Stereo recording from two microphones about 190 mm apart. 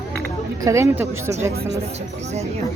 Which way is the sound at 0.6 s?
15° right (ahead or behind).